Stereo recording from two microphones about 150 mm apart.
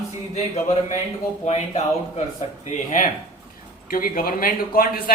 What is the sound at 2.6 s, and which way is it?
Cough, 55° left (ahead or behind).